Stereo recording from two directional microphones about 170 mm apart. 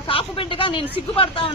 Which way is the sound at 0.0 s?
30° left (ahead or behind).